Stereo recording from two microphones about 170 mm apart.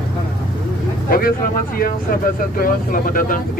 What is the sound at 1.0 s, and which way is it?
Speech, 60° left (ahead or behind).